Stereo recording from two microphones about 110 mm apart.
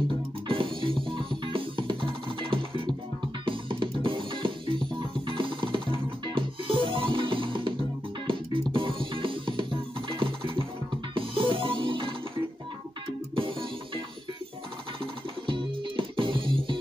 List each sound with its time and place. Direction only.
0.5 s music: 50° right (ahead or behind)
15.4 s music: 50° right (ahead or behind)